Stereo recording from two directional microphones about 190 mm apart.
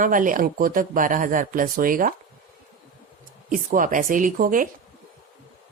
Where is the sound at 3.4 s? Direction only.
45° right (ahead or behind).